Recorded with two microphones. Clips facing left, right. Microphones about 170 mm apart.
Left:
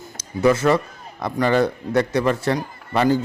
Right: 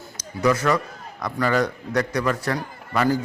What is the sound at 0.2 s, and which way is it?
A man's voice, 25° left (ahead or behind).